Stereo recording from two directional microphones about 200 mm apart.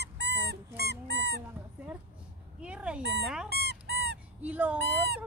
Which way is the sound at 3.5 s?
55° right (ahead or behind).